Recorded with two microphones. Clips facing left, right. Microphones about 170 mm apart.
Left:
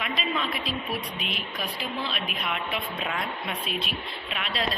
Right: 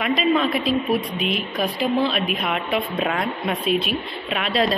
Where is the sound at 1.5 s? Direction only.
60° right (ahead or behind).